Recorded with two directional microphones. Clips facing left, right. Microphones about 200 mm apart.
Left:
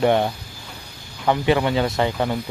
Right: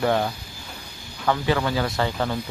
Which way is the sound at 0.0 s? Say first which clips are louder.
Left 4 dB; 20° left (ahead or behind).